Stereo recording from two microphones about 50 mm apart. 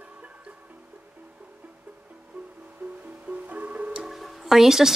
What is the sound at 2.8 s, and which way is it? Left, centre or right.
Music, right.